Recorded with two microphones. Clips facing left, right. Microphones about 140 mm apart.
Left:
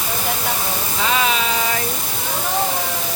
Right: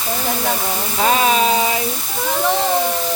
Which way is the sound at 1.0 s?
40° right (ahead or behind).